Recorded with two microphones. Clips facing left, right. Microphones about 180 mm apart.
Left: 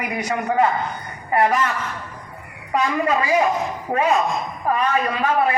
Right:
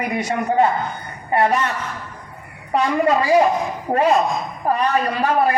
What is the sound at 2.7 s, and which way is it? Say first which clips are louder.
A man's voice: right 3 dB; 35° right (ahead or behind).